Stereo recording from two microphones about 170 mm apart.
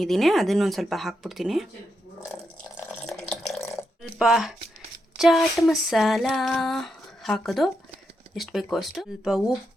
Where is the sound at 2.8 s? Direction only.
10° left (ahead or behind).